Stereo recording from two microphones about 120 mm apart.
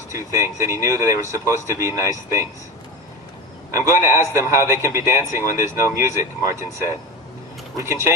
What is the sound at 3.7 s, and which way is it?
A man's voice, 25° right (ahead or behind).